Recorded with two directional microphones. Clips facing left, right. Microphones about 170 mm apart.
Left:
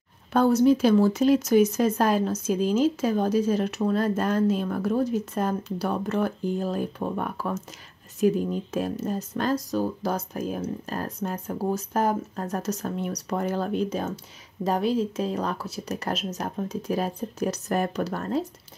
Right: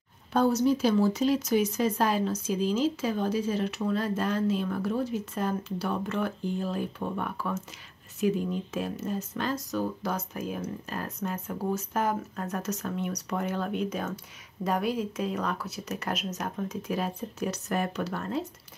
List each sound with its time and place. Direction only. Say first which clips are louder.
0.3 s speech: left 5 dB; 55° left (ahead or behind); by 18.4 s 40° left (ahead or behind)